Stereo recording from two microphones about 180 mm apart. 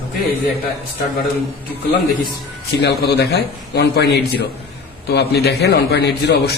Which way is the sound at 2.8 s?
65° left (ahead or behind).